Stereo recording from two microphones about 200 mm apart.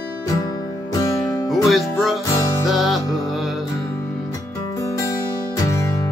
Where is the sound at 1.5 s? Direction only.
Centre (ahead or behind).